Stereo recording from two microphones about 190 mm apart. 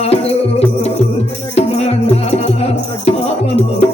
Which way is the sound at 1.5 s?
35° left (ahead or behind).